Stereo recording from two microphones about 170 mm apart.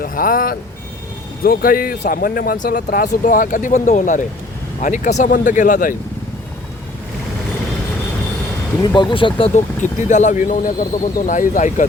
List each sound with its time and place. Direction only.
0.0 s speech: 55° left (ahead or behind)
8.8 s speech: 25° left (ahead or behind)
10.0 s speech: 45° left (ahead or behind)